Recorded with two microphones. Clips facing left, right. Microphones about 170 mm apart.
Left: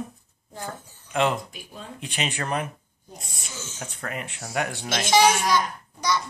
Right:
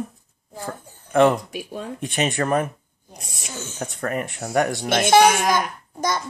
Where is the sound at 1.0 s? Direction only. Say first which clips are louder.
Right 8 dB; 50° right (ahead or behind).